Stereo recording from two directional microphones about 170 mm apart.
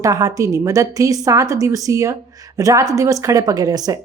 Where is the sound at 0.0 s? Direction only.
20° right (ahead or behind).